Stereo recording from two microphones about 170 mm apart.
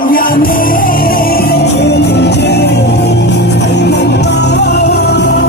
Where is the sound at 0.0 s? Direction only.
55° left (ahead or behind).